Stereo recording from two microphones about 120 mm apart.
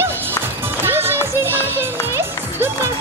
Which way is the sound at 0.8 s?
20° right (ahead or behind).